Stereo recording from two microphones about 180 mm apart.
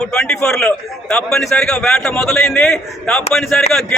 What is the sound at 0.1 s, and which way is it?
A man's voice, 5° left (ahead or behind).